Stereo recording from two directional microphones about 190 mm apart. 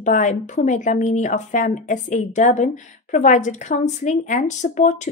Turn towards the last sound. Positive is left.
turn(degrees=40)  # may be behind; listen again after turning